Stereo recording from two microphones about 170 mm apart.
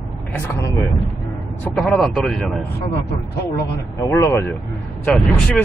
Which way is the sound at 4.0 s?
15° left (ahead or behind).